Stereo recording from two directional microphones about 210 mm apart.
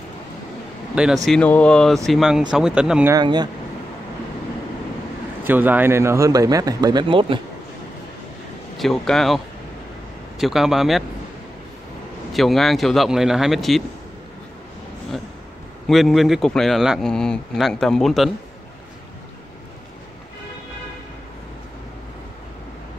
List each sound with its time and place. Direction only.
0.9 s a man's voice: centre (ahead or behind)
3.2 s speech: 20° right (ahead or behind)
5.4 s a man's voice: 10° right (ahead or behind)
8.7 s a man's voice: centre (ahead or behind)
10.4 s a man's voice: centre (ahead or behind)
12.3 s a man's voice: centre (ahead or behind)
15.9 s a man's voice: centre (ahead or behind)